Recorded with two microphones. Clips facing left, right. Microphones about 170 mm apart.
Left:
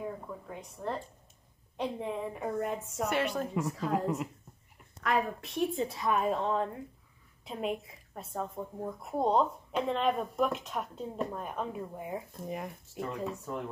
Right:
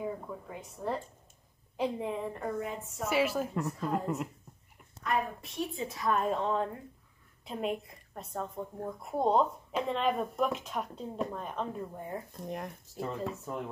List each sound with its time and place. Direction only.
0.0 s a woman's voice: centre (ahead or behind)